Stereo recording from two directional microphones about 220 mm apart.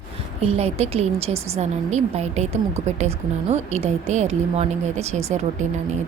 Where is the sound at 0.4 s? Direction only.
30° right (ahead or behind).